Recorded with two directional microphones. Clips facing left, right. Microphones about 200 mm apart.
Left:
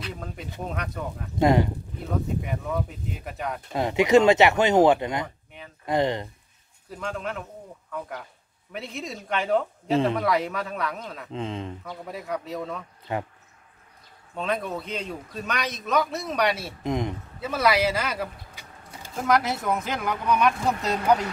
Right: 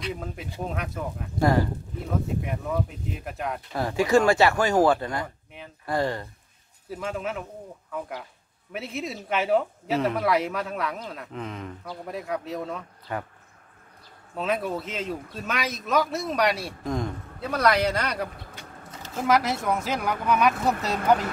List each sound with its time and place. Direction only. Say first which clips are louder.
0.0 s a man's voice: right 3 dB; 5° right (ahead or behind)
1.4 s speech: left 2 dB; 20° left (ahead or behind)
2.4 s a man's voice: right 1 dB; centre (ahead or behind)
3.7 s speech: left 3 dB; 20° left (ahead or behind)
5.5 s a man's voice: right 1 dB; centre (ahead or behind)
5.9 s speech: left 3 dB; 20° left (ahead or behind)
6.9 s a man's voice: right 1 dB; 5° right (ahead or behind)
11.3 s speech: left 5 dB; 25° left (ahead or behind)
11.8 s a man's voice: right 1 dB; centre (ahead or behind)
13.1 s speech: left 3 dB; 25° left (ahead or behind)
14.3 s a man's voice: right 1 dB; centre (ahead or behind)
16.8 s speech: left 2 dB; 20° left (ahead or behind)
17.4 s a man's voice: even; 5° left (ahead or behind)